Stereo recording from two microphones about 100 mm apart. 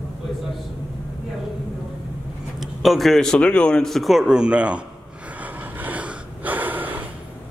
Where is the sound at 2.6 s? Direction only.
Centre (ahead or behind).